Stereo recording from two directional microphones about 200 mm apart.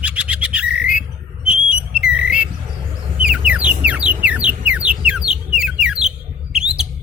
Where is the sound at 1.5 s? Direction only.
5° right (ahead or behind).